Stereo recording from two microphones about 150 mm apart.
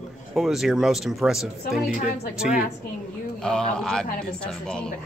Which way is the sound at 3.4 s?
5° left (ahead or behind).